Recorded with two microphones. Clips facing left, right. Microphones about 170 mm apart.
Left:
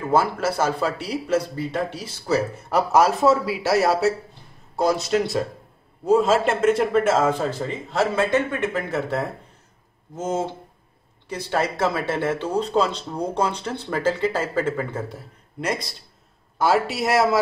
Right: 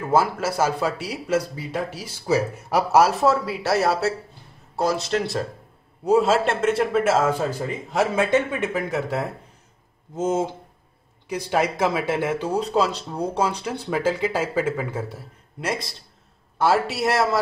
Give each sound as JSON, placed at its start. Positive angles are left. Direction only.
{"t": 0.1, "sound": "speech", "side_deg": -5}